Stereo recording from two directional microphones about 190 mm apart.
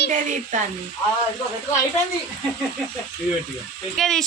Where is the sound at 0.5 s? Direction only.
40° right (ahead or behind).